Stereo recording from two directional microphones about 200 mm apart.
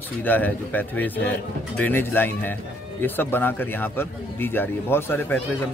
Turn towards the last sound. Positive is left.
turn(degrees=10)  # may be behind; listen again after turning